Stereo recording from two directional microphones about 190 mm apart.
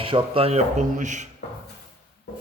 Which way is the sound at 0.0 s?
30° right (ahead or behind).